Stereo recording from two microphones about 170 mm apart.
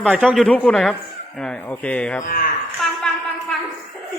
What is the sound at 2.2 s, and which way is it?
Speech, 50° left (ahead or behind).